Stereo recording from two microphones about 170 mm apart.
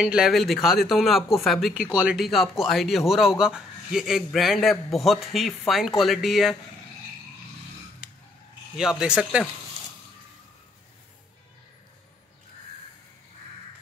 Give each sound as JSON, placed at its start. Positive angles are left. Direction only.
{"t": 0.0, "sound": "a man's voice", "side_deg": -5}
{"t": 8.0, "sound": "a sound", "side_deg": -5}
{"t": 8.7, "sound": "a man's voice", "side_deg": -5}